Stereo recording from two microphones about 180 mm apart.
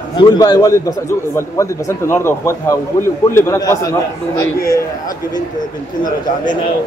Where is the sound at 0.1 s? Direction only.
20° left (ahead or behind).